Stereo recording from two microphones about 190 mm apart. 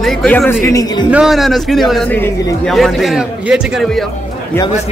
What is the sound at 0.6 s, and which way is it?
Speech, 20° left (ahead or behind).